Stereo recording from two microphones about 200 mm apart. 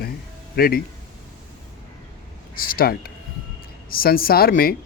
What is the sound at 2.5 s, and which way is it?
Speech, 45° left (ahead or behind).